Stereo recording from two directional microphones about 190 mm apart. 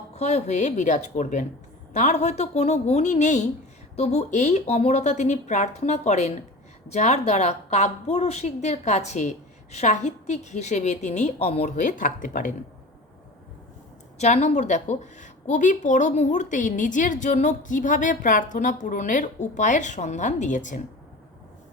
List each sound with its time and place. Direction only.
0.1 s a woman's voice: 35° left (ahead or behind)
14.2 s a woman's voice: 35° left (ahead or behind)